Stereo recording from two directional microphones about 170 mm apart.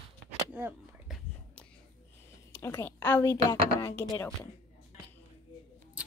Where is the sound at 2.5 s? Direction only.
15° left (ahead or behind).